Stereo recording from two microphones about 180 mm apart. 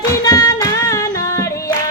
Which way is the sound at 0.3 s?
20° left (ahead or behind).